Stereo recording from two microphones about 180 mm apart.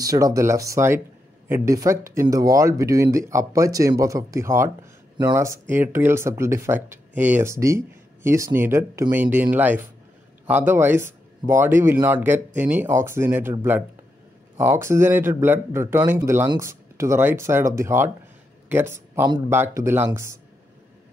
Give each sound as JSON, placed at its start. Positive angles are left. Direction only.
{"t": 0.0, "sound": "speech", "side_deg": -20}